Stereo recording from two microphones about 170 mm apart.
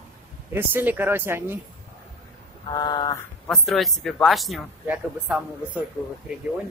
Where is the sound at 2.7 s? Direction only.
25° left (ahead or behind).